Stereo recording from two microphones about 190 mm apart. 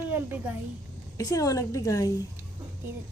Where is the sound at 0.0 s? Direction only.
10° right (ahead or behind).